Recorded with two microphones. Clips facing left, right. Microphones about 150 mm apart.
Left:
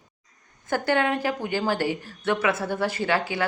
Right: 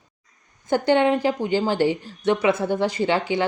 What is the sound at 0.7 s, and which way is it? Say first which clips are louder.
A woman's voice: right 5 dB; 20° right (ahead or behind).